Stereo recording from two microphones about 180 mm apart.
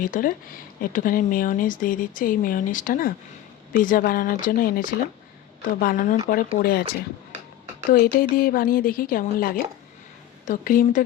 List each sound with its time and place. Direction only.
0.0 s speech: 50° left (ahead or behind)
7.9 s speech: 55° left (ahead or behind)